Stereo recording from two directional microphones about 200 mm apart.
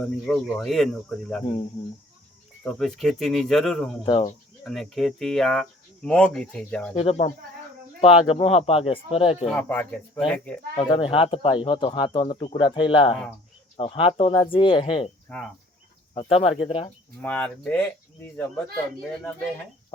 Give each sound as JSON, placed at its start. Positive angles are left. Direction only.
{"t": 0.0, "sound": "speech", "side_deg": 0}
{"t": 2.6, "sound": "speech", "side_deg": 0}
{"t": 4.0, "sound": "speech", "side_deg": 35}
{"t": 4.6, "sound": "speech", "side_deg": 0}
{"t": 6.9, "sound": "speech", "side_deg": 30}
{"t": 9.5, "sound": "speech", "side_deg": 5}
{"t": 10.8, "sound": "speech", "side_deg": 25}
{"t": 16.1, "sound": "speech", "side_deg": 30}
{"t": 17.2, "sound": "speech", "side_deg": 5}